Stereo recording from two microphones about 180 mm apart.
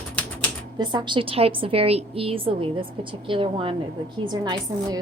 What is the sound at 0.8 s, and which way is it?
A woman's voice, 25° right (ahead or behind).